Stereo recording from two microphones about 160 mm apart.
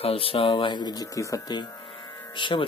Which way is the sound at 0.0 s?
35° left (ahead or behind).